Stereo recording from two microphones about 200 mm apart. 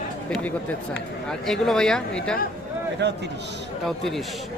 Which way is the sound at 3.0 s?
60° right (ahead or behind).